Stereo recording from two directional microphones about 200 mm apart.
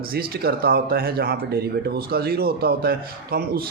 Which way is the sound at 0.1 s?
50° right (ahead or behind).